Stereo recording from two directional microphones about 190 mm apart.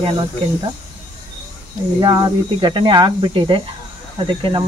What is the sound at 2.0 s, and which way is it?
Speech, 25° right (ahead or behind).